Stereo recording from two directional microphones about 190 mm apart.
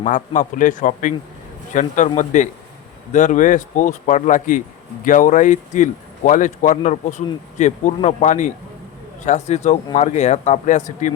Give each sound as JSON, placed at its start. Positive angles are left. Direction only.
{"t": 0.0, "sound": "speech", "side_deg": 40}